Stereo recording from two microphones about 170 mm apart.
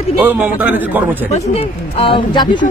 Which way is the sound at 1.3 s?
35° left (ahead or behind).